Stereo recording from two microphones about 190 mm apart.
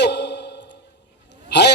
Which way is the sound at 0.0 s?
65° left (ahead or behind).